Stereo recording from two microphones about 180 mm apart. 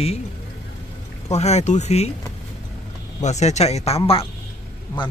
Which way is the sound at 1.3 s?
35° left (ahead or behind).